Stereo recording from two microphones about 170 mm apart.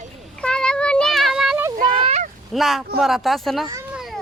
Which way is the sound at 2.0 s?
35° right (ahead or behind).